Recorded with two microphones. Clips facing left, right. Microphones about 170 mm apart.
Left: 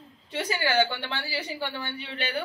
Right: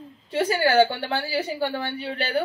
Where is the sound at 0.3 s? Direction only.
55° right (ahead or behind).